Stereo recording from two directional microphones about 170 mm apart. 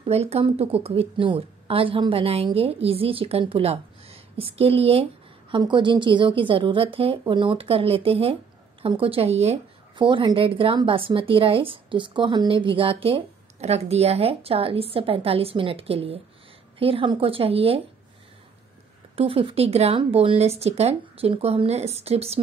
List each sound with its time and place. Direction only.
0.0 s speech: 35° right (ahead or behind)
19.1 s speech: 30° right (ahead or behind)